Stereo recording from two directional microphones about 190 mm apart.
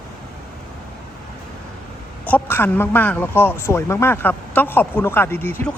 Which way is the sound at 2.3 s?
10° left (ahead or behind).